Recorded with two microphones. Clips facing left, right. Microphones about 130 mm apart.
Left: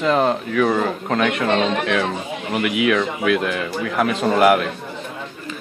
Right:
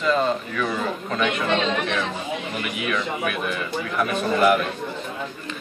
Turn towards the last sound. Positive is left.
turn(degrees=80)